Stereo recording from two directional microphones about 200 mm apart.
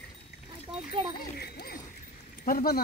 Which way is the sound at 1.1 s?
50° left (ahead or behind).